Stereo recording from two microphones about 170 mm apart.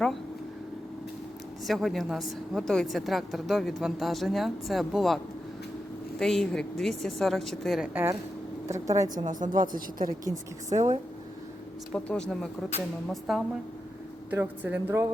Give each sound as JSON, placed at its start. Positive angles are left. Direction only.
{"t": 1.6, "sound": "a woman's voice", "side_deg": 0}
{"t": 8.6, "sound": "speech", "side_deg": -20}
{"t": 9.1, "sound": "a woman's voice", "side_deg": -50}
{"t": 10.8, "sound": "a woman's voice", "side_deg": -45}
{"t": 11.9, "sound": "a woman's voice", "side_deg": 5}